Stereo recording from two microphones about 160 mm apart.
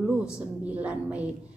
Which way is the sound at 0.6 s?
10° right (ahead or behind).